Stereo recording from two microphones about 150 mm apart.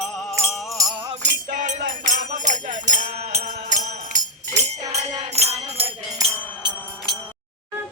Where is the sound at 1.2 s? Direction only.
55° right (ahead or behind).